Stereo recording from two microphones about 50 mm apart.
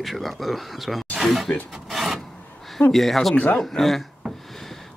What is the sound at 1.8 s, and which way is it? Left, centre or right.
Filing, centre.